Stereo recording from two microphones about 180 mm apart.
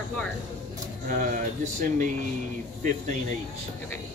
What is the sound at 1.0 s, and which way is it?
Speech, 45° right (ahead or behind).